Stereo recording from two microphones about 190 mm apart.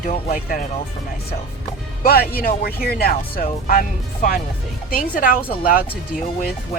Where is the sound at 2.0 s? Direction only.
50° left (ahead or behind).